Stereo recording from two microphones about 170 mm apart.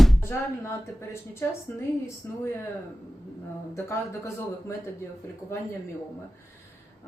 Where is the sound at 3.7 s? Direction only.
15° left (ahead or behind).